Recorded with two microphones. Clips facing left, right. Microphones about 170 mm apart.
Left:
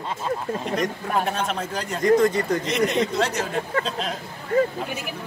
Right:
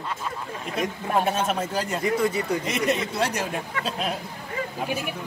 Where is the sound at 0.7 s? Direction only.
5° right (ahead or behind).